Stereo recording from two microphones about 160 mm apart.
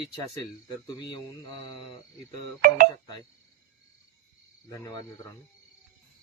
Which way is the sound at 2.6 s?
65° right (ahead or behind).